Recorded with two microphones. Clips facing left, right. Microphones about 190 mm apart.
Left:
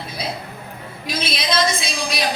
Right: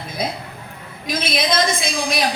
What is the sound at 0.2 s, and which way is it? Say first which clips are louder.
A woman's voice: right 4 dB; 50° right (ahead or behind).